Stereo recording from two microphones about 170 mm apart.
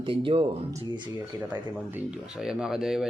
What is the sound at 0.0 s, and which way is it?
Speech, 30° right (ahead or behind).